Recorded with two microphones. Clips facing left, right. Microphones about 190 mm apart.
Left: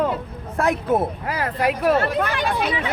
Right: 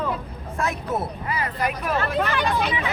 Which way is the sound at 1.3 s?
70° left (ahead or behind).